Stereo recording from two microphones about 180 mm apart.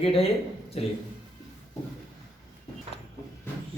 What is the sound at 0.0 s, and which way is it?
Speech, 30° left (ahead or behind).